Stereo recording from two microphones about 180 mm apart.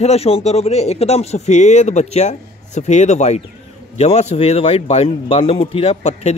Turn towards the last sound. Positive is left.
turn(degrees=35)  # may be behind; listen again after turning